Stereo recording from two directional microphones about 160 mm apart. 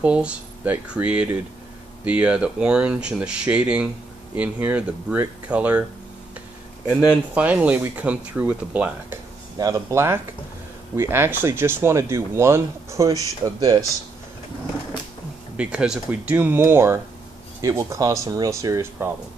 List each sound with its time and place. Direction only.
0.0 s speech: 5° right (ahead or behind)
7.3 s speech: 10° right (ahead or behind)
9.6 s speech: 20° right (ahead or behind)
15.5 s speech: 5° right (ahead or behind)